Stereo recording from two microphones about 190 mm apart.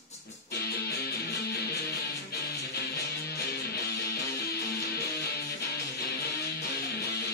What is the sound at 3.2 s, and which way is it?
Music, 55° left (ahead or behind).